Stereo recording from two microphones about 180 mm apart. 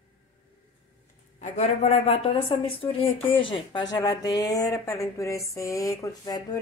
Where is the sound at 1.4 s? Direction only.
40° left (ahead or behind); by 4.6 s 20° left (ahead or behind).